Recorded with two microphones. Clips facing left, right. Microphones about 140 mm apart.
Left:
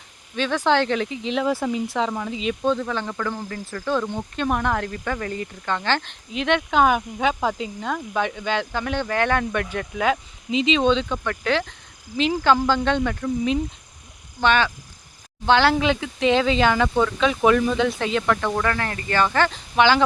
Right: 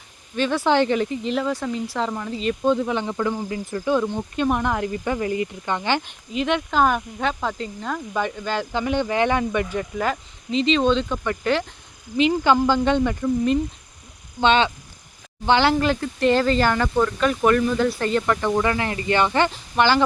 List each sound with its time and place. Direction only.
0.3 s speech: 10° right (ahead or behind)
2.6 s speech: 15° right (ahead or behind)
12.6 s speech: 10° right (ahead or behind)
14.4 s speech: 25° right (ahead or behind)
15.7 s speech: 5° right (ahead or behind)
19.8 s speech: 5° left (ahead or behind)